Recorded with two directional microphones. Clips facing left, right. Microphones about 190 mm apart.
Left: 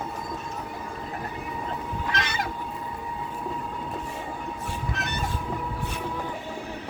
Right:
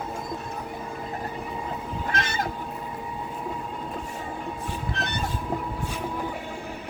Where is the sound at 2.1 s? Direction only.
45° right (ahead or behind).